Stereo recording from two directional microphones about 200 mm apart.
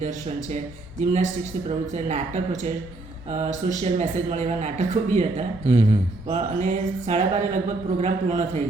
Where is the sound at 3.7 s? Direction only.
35° right (ahead or behind).